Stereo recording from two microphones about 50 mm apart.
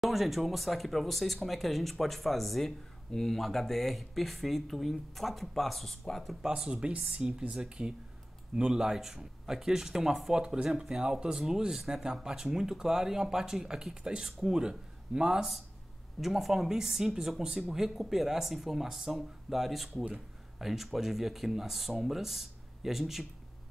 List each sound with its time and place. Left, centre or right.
0.0 s speech: centre
6.4 s speech: centre
16.2 s speech: centre